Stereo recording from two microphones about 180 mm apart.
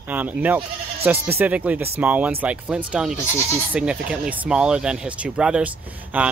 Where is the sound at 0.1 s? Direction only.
10° right (ahead or behind).